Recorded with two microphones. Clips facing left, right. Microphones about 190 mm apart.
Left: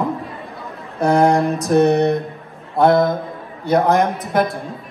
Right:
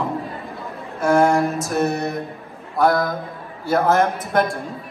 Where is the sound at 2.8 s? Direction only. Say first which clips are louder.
Left 4 dB; 25° left (ahead or behind).